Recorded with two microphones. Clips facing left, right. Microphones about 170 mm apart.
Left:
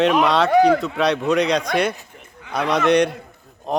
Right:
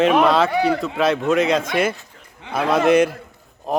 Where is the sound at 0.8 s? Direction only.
Centre (ahead or behind).